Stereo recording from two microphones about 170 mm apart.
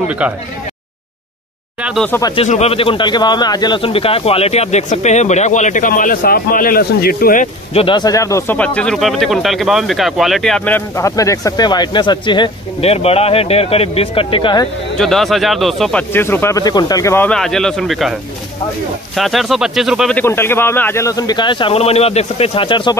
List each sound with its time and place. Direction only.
1.8 s speech: 5° right (ahead or behind)
2.0 s speech: 15° left (ahead or behind)
2.3 s speech: 40° left (ahead or behind); by 7.4 s 60° left (ahead or behind)
7.7 s speech: 30° left (ahead or behind)
15.0 s speech: centre (ahead or behind)
19.1 s speech: centre (ahead or behind)
20.2 s speech: 15° left (ahead or behind); by 22.9 s 30° left (ahead or behind)